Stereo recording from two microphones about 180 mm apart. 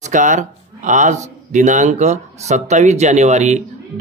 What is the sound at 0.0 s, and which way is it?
Speech, 45° right (ahead or behind).